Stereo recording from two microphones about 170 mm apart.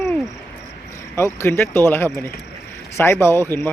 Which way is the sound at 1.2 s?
15° left (ahead or behind).